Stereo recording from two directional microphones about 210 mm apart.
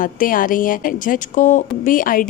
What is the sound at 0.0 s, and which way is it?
A woman's voice, 40° left (ahead or behind).